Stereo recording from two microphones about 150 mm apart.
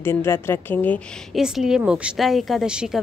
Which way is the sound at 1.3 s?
5° right (ahead or behind).